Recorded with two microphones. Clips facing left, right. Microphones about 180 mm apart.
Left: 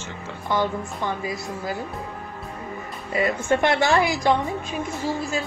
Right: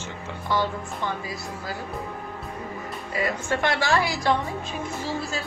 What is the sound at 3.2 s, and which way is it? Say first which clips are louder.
A woman's voice: left 5 dB; 20° left (ahead or behind).